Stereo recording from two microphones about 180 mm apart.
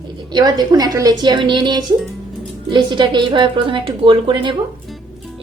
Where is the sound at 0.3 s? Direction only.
25° right (ahead or behind).